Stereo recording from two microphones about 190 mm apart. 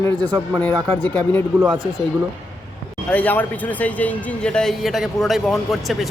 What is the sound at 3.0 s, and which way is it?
Speech, 10° left (ahead or behind).